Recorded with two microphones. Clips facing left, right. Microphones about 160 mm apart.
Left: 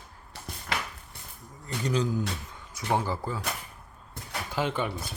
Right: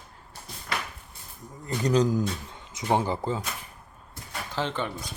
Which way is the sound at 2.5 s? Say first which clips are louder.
Right 2 dB; 20° right (ahead or behind).